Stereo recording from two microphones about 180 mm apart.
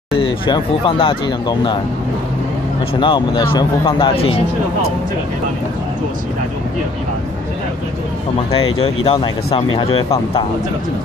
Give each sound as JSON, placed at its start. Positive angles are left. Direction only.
{"t": 0.2, "sound": "speech", "side_deg": 30}
{"t": 3.0, "sound": "speech", "side_deg": 25}
{"t": 8.7, "sound": "speech", "side_deg": 30}